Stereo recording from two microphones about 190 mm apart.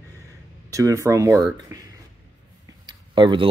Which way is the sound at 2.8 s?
25° right (ahead or behind).